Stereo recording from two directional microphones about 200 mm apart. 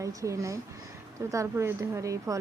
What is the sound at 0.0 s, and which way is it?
A woman's voice, 15° right (ahead or behind).